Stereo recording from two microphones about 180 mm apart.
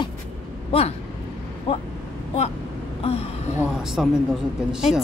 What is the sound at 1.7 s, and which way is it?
Speech, 35° left (ahead or behind).